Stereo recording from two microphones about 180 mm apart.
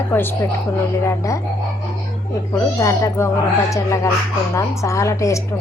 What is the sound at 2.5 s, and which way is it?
A woman's voice, 15° left (ahead or behind).